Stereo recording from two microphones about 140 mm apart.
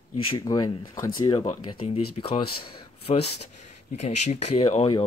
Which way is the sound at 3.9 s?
55° left (ahead or behind).